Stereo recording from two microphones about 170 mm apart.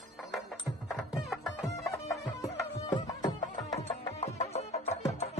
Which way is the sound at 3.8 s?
40° left (ahead or behind).